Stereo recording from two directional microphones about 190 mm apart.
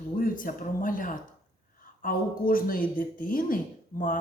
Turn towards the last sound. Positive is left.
turn(degrees=45)  # may be behind; listen again after turning